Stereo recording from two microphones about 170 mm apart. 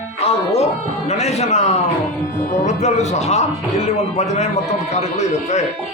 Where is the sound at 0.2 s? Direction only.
35° left (ahead or behind).